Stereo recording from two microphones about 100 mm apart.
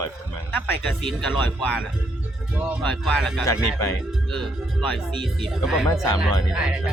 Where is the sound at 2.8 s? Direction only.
Centre (ahead or behind).